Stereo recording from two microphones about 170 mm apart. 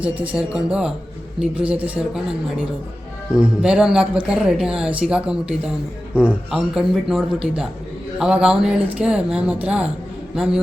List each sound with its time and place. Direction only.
0.0 s speech: 10° right (ahead or behind)